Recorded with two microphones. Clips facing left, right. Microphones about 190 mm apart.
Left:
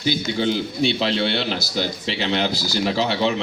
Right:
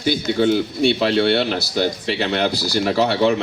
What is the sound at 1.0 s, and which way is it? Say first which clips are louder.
Speech: right 5 dB; 55° right (ahead or behind).